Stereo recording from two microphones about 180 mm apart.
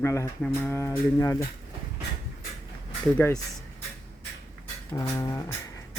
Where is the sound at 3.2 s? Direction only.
15° left (ahead or behind).